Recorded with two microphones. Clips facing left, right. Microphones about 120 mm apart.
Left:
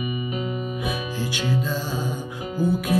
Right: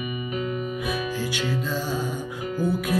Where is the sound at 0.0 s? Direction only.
20° left (ahead or behind).